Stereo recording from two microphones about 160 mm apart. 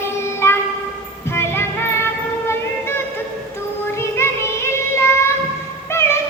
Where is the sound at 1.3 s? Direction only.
15° left (ahead or behind).